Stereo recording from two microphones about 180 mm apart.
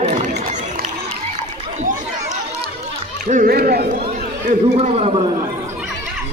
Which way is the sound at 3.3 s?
55° right (ahead or behind).